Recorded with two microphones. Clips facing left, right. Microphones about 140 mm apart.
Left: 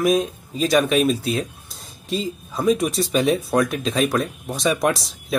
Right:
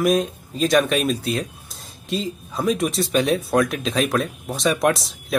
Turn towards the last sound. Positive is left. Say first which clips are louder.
# right 1 dB
turn(degrees=0)  # may be behind; listen again after turning